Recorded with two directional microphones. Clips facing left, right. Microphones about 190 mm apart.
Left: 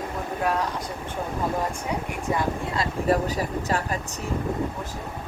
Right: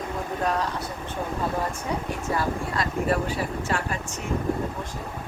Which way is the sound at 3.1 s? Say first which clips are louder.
Left 2 dB; 40° left (ahead or behind).